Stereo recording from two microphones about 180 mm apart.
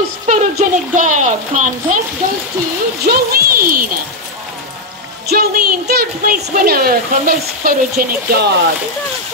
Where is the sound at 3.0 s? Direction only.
55° right (ahead or behind).